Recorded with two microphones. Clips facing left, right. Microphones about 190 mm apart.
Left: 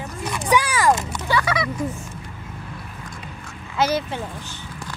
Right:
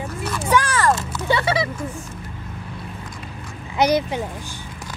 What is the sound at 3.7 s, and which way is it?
Speech, 15° right (ahead or behind).